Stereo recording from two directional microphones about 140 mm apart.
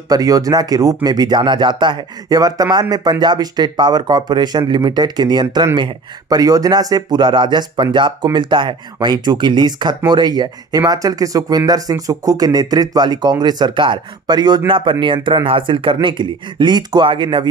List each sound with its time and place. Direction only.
0.1 s speech: 25° right (ahead or behind)